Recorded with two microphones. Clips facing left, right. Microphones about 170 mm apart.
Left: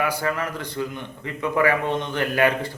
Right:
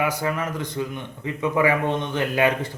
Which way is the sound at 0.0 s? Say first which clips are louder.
Even; 20° right (ahead or behind).